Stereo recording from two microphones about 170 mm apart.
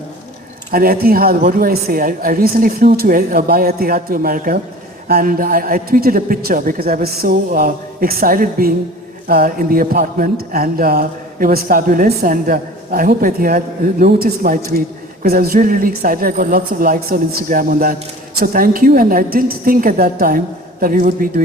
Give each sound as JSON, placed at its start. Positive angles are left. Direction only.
{"t": 0.7, "sound": "speech", "side_deg": -60}